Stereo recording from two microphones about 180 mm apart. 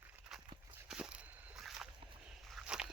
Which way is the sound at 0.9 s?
5° right (ahead or behind).